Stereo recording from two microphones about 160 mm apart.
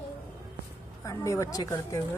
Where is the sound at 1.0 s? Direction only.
20° left (ahead or behind).